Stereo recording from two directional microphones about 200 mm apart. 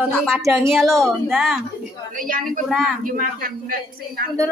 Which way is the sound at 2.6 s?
Centre (ahead or behind).